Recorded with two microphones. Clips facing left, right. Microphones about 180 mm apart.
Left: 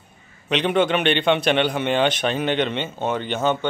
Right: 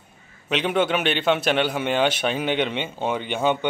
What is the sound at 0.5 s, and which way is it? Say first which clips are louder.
A man's voice: left 2 dB; 5° right (ahead or behind).